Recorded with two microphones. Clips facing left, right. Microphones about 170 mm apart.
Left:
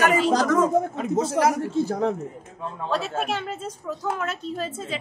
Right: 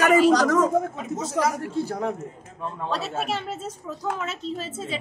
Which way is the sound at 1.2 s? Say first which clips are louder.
Left 4 dB; 60° left (ahead or behind).